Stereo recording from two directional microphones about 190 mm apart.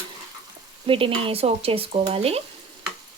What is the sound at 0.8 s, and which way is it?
Speech, 30° right (ahead or behind).